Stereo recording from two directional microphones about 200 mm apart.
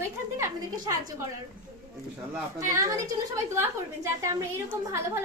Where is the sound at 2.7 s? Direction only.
15° right (ahead or behind).